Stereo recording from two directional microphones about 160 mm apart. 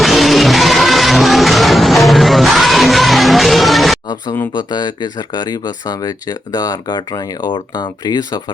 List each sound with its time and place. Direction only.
0.0 s music: centre (ahead or behind)
4.1 s speech: 25° left (ahead or behind)